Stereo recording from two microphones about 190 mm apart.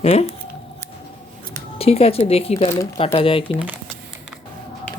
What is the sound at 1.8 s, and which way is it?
Speech, 30° left (ahead or behind).